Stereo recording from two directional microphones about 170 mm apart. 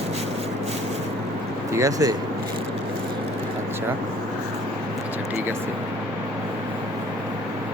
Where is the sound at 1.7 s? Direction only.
20° right (ahead or behind).